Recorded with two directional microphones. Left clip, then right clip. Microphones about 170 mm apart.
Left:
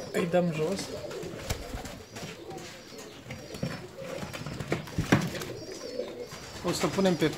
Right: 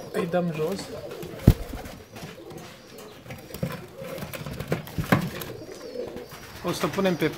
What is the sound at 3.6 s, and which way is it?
Pigeon, 45° right (ahead or behind).